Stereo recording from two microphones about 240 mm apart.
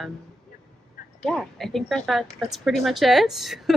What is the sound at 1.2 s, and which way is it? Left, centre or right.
Speech, centre.